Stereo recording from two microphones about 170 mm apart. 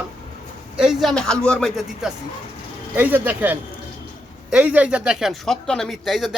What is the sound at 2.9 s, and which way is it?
A man's voice, 10° right (ahead or behind).